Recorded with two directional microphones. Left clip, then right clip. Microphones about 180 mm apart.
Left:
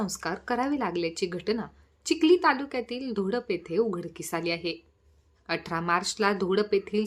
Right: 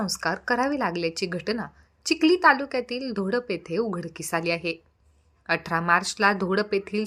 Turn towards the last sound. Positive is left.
turn(degrees=-15)  # may be behind; listen again after turning